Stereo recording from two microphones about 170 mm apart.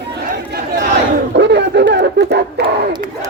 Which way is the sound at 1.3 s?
90° right.